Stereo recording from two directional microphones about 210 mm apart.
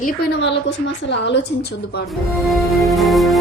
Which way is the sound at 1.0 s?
55° left (ahead or behind).